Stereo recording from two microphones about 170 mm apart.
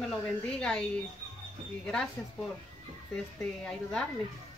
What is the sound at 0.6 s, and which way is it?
Speech, 5° left (ahead or behind).